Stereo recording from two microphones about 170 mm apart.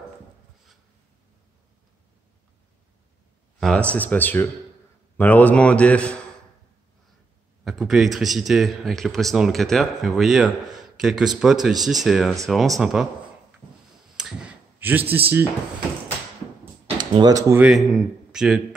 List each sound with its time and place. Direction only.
3.5 s a man's voice: 5° left (ahead or behind)
7.6 s speech: centre (ahead or behind)
14.2 s a sound: 5° right (ahead or behind)
14.8 s a man's voice: 10° right (ahead or behind)
16.8 s a sound: 30° right (ahead or behind)
17.6 s speech: 5° right (ahead or behind)